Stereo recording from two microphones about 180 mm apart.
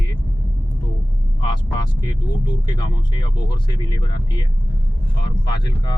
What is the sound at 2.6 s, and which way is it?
Speech, 25° left (ahead or behind).